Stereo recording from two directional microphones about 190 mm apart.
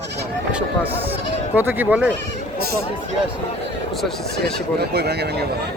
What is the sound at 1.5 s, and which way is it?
Speech, 10° right (ahead or behind).